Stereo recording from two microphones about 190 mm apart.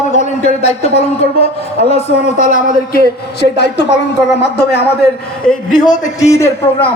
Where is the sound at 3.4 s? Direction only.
60° left (ahead or behind).